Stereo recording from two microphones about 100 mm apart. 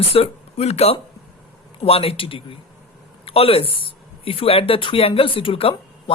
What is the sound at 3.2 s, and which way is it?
Speech, 75° left (ahead or behind).